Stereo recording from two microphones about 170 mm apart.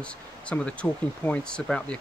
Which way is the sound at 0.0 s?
5° left (ahead or behind).